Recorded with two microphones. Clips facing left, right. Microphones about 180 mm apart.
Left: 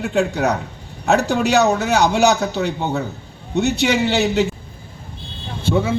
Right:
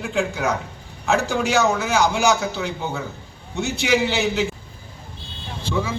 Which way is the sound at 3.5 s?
65° left (ahead or behind).